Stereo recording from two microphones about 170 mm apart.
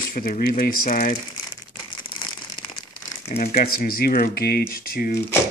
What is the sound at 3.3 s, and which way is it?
Speech, 60° left (ahead or behind).